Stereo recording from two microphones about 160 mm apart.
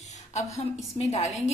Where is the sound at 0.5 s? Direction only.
45° left (ahead or behind).